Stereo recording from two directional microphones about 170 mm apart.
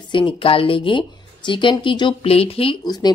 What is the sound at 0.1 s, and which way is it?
Speech, 30° left (ahead or behind).